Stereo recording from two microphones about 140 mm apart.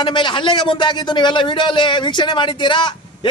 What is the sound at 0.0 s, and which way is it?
Speech, 35° left (ahead or behind).